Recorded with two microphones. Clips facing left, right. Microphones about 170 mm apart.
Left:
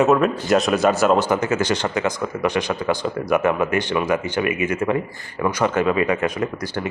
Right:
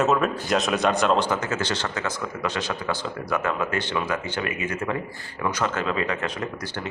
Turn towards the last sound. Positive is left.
turn(degrees=10)  # may be behind; listen again after turning